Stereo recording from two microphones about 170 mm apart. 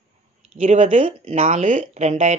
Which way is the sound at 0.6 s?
40° right (ahead or behind).